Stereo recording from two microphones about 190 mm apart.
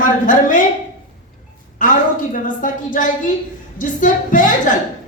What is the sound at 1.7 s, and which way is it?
A woman's voice, 45° left (ahead or behind).